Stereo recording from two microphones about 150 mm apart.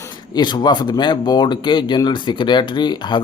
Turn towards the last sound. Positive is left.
turn(degrees=30)  # may be behind; listen again after turning